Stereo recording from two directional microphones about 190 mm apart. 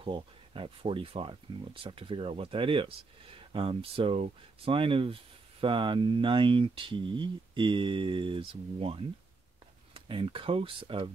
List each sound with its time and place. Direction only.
0.0 s speech: 30° right (ahead or behind)